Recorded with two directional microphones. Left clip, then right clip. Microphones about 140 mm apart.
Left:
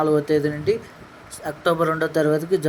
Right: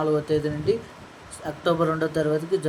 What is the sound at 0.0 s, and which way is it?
Speech, 35° left (ahead or behind).